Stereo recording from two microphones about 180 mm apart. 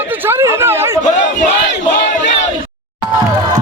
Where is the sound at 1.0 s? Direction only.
45° left (ahead or behind).